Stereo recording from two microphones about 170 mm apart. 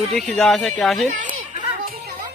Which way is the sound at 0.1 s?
Centre (ahead or behind).